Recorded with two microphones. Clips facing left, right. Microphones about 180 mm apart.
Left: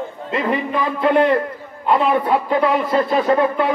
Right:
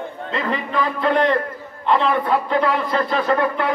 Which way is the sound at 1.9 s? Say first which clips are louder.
Left 2 dB; 10° left (ahead or behind).